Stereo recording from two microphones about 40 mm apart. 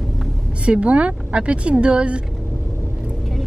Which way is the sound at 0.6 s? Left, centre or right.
Right.